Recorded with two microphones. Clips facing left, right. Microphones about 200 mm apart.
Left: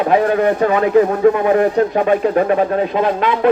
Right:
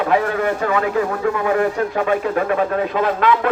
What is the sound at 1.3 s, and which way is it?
Speech, 25° left (ahead or behind).